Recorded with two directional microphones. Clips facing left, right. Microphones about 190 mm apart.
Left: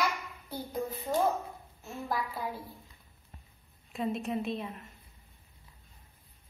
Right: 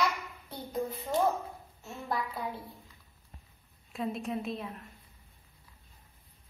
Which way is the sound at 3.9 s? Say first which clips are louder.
Left 2 dB; centre (ahead or behind).